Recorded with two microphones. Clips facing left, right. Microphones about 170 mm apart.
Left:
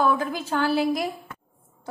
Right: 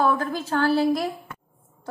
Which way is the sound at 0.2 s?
15° left (ahead or behind).